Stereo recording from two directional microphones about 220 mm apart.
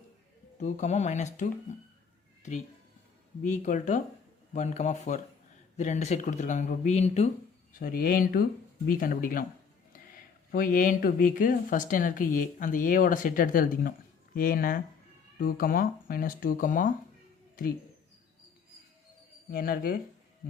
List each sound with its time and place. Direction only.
0.6 s speech: 30° left (ahead or behind)
7.8 s speech: 40° left (ahead or behind)
19.5 s speech: 45° left (ahead or behind)